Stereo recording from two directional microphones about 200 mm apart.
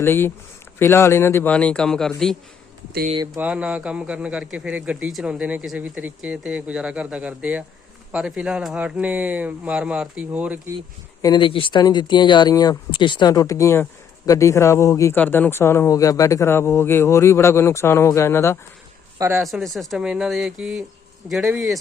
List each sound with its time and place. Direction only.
0.0 s speech: 10° left (ahead or behind)
3.3 s a man's voice: 5° right (ahead or behind)
11.2 s speech: 20° left (ahead or behind)
19.4 s a man's voice: centre (ahead or behind)